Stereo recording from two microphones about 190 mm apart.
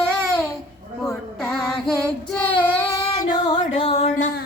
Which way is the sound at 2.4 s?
10° left (ahead or behind).